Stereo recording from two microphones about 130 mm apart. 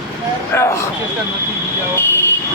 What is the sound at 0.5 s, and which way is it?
Speech, 25° left (ahead or behind).